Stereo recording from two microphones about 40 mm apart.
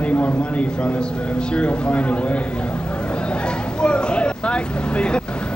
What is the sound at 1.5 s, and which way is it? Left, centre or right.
Speech, left.